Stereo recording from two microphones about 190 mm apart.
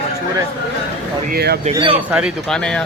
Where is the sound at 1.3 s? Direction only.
55° right (ahead or behind).